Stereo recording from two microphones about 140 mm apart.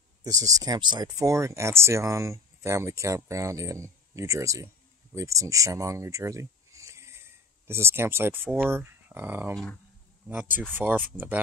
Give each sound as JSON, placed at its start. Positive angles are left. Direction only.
{"t": 0.2, "sound": "speech", "side_deg": -25}
{"t": 10.7, "sound": "speech", "side_deg": -10}